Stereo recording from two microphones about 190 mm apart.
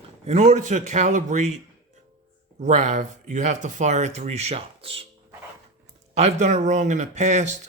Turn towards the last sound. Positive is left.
turn(degrees=-40)  # may be behind; listen again after turning